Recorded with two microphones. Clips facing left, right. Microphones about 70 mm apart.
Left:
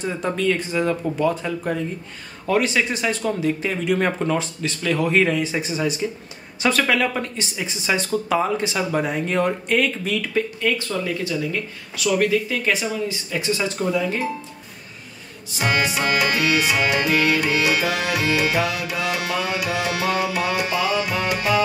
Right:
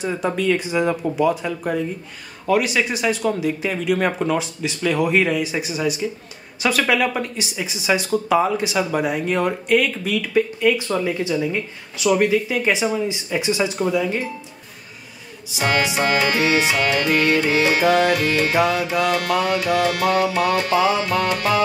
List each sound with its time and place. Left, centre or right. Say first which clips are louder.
0.0 s speech: right 1 dB; centre
10.8 s speech: right 3 dB; centre
16.0 s music: right 2 dB; right
16.7 s music: right 1 dB; centre
17.3 s music: right 2 dB; right
18.1 s music: right 2 dB; centre
18.5 s music: right 4 dB; right
18.9 s music: right 4 dB; centre
20.7 s music: right 6 dB; right
21.0 s music: right 3 dB; centre